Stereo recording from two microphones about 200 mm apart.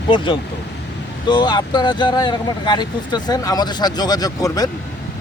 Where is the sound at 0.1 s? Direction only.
25° left (ahead or behind).